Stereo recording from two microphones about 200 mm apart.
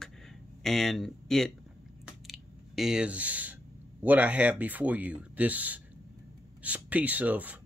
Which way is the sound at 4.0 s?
10° right (ahead or behind).